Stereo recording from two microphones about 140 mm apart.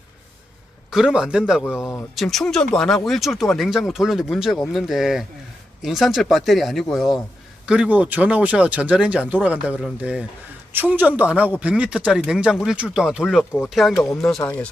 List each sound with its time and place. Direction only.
0.9 s speech: 5° right (ahead or behind)
1.6 s speech: 20° left (ahead or behind)
2.1 s speech: centre (ahead or behind)
14.4 s speech: 10° left (ahead or behind)